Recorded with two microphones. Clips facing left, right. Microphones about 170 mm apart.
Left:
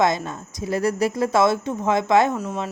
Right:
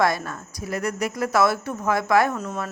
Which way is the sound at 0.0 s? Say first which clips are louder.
Left 2 dB; 20° left (ahead or behind).